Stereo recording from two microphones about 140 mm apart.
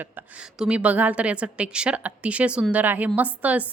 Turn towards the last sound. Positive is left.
turn(degrees=-10)  # may be behind; listen again after turning